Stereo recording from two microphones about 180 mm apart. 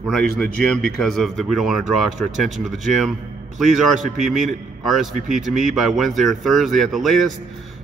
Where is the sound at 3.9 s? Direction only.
45° right (ahead or behind).